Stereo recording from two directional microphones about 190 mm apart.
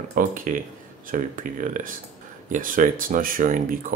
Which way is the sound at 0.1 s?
45° right (ahead or behind).